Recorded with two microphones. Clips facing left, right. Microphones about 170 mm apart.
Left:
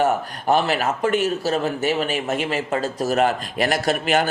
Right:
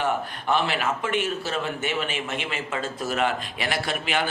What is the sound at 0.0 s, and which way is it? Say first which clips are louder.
Speech: left 6 dB; 40° left (ahead or behind).